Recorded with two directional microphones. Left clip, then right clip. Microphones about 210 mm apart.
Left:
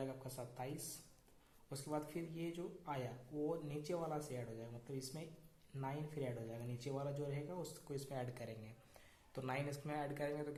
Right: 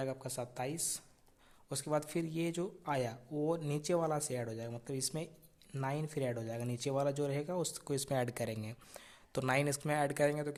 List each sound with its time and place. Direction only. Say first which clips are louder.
0.0 s a man's voice: right 8 dB; 45° right (ahead or behind)
1.7 s a man's voice: right 9 dB; 45° right (ahead or behind)